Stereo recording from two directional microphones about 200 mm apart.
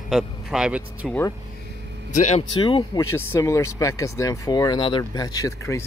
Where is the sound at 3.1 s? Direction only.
15° left (ahead or behind).